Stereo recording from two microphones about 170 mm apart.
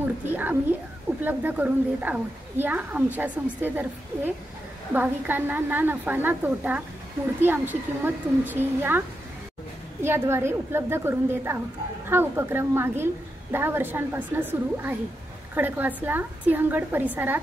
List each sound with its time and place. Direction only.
0.0 s a woman's voice: 10° right (ahead or behind)
10.0 s a woman's voice: 15° right (ahead or behind)